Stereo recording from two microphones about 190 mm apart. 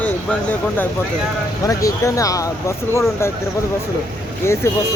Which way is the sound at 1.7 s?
15° left (ahead or behind).